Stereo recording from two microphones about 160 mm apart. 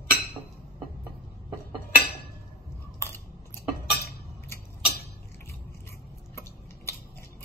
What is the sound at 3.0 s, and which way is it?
Cutlery, 15° left (ahead or behind).